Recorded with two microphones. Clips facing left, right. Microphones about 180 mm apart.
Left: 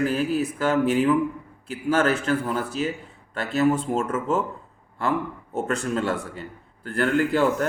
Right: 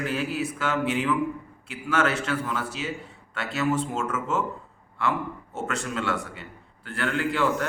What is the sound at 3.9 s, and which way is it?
Speech, 35° left (ahead or behind).